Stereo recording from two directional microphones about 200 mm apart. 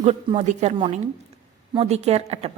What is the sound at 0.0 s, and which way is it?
Speech, 30° right (ahead or behind).